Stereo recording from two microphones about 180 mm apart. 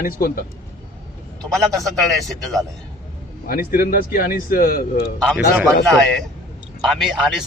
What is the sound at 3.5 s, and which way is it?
A man's voice, 55° left (ahead or behind).